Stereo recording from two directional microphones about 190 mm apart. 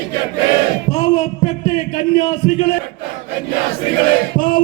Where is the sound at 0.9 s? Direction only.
40° left (ahead or behind).